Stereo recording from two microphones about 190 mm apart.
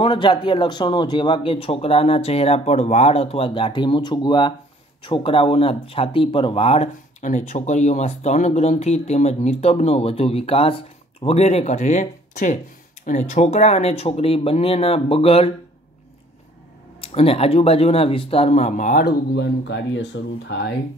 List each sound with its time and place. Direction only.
0.0 s a man's voice: 25° left (ahead or behind)
17.0 s speech: 30° left (ahead or behind)
19.0 s speech: 65° left (ahead or behind)